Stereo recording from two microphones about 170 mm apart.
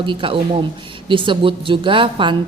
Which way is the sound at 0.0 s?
30° right (ahead or behind).